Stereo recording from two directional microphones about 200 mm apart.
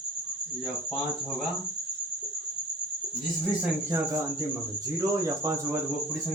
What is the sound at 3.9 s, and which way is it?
Speech, 15° right (ahead or behind).